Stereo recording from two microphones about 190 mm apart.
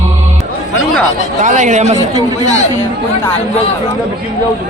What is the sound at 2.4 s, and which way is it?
Speech, 35° left (ahead or behind).